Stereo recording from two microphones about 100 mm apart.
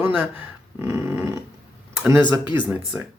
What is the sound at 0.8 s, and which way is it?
Dog, 25° right (ahead or behind).